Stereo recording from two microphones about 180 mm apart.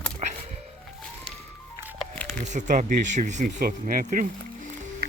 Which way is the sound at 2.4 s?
40° right (ahead or behind).